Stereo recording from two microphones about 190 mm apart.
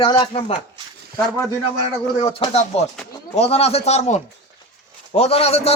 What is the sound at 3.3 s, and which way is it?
A man's voice, 35° left (ahead or behind).